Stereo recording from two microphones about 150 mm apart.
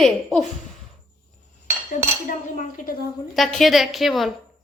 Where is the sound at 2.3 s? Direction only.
60° left (ahead or behind).